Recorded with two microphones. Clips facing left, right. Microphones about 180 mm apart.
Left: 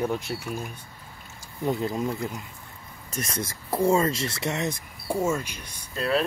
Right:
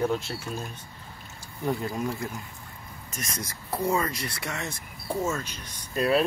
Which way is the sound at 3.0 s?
30° left (ahead or behind).